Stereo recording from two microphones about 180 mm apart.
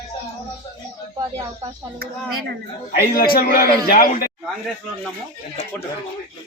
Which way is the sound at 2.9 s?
55° left (ahead or behind).